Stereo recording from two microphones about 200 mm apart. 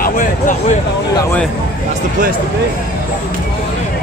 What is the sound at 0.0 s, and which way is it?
Speech, 40° left (ahead or behind).